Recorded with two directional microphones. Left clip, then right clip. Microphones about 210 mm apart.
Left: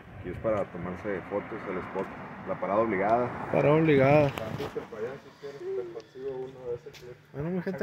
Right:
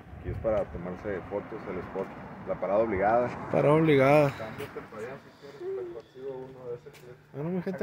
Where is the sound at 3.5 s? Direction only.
5° right (ahead or behind).